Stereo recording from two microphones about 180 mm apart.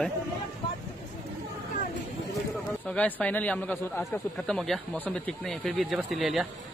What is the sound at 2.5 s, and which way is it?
A man's voice, 5° left (ahead or behind).